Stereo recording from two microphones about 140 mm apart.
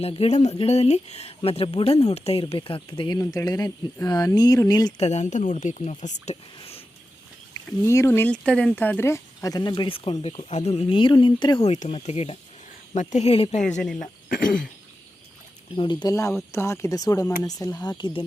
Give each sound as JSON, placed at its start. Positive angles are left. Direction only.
{"t": 0.0, "sound": "speech", "side_deg": 45}
{"t": 4.9, "sound": "speech", "side_deg": 50}
{"t": 6.6, "sound": "a sound", "side_deg": 40}
{"t": 7.9, "sound": "speech", "side_deg": 20}
{"t": 11.6, "sound": "speech", "side_deg": 50}
{"t": 13.7, "sound": "speech", "side_deg": 0}
{"t": 14.0, "sound": "speech", "side_deg": 75}
{"t": 15.7, "sound": "speech", "side_deg": 35}